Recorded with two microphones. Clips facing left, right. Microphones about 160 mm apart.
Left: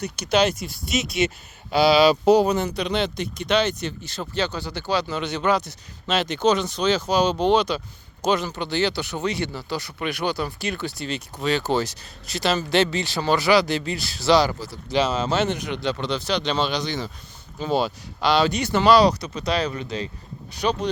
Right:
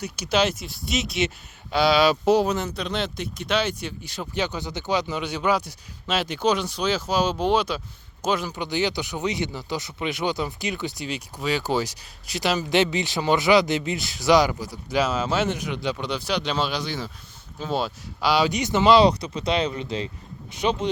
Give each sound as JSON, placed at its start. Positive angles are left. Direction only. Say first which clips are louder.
{"t": 0.0, "sound": "speech", "louder": "left 2 dB", "side_deg": -5}